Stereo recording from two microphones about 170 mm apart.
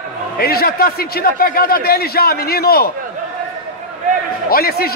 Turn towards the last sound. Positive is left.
turn(degrees=65)  # may be behind; listen again after turning